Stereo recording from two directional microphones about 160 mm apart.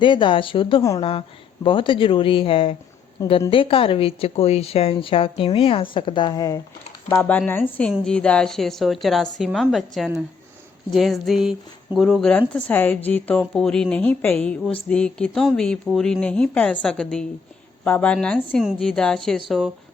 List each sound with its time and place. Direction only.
0.0 s a woman's voice: 30° left (ahead or behind)
3.2 s a woman's voice: 20° left (ahead or behind)
3.5 s a woman's voice: 35° left (ahead or behind)
7.1 s a woman's voice: 10° left (ahead or behind)